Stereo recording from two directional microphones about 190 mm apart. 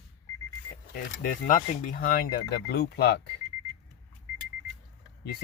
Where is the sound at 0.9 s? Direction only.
45° left (ahead or behind); by 3.2 s 60° left (ahead or behind).